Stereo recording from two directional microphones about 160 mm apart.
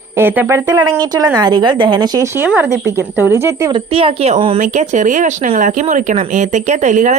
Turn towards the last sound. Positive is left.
turn(degrees=-50)  # may be behind; listen again after turning